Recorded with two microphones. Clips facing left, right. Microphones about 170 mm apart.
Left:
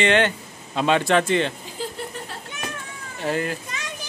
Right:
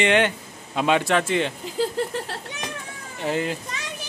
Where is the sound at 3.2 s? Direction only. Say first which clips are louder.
Even; 20° right (ahead or behind).